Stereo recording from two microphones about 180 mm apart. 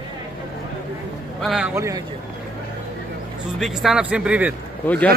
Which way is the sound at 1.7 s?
15° right (ahead or behind).